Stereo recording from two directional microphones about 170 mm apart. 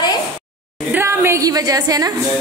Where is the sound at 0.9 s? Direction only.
15° right (ahead or behind).